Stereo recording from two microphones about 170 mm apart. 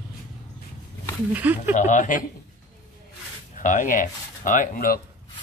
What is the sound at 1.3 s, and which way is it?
Speech, 10° right (ahead or behind).